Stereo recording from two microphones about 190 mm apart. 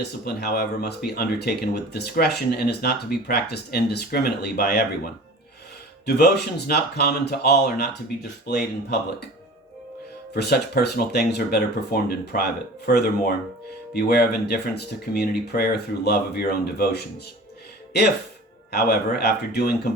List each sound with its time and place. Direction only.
0.0 s speech: 60° left (ahead or behind)
6.1 s speech: 60° left (ahead or behind)
10.3 s speech: 55° left (ahead or behind)
18.7 s speech: 60° left (ahead or behind)